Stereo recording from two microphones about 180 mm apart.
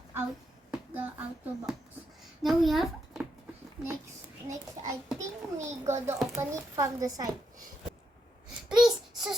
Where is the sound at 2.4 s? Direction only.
Centre (ahead or behind).